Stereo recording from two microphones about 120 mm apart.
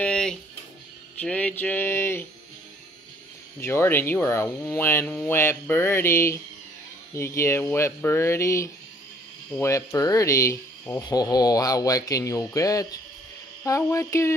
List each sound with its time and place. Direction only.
0.0 s music: 5° left (ahead or behind)
1.2 s a sound: 10° left (ahead or behind)
3.6 s speech: 20° left (ahead or behind)